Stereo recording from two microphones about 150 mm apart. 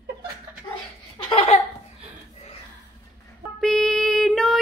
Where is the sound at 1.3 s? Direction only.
40° left (ahead or behind).